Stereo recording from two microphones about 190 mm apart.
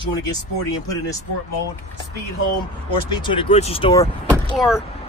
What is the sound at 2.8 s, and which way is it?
Speech, 25° left (ahead or behind).